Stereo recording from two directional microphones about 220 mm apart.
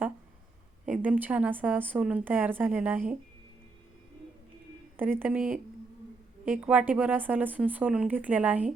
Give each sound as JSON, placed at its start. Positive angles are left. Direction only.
{"t": 0.9, "sound": "a woman's voice", "side_deg": -5}
{"t": 4.9, "sound": "a woman's voice", "side_deg": -10}